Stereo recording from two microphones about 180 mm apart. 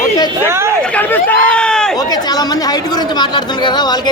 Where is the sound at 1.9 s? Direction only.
20° left (ahead or behind).